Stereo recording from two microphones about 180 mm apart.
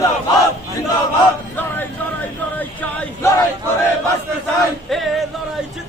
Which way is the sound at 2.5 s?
10° left (ahead or behind).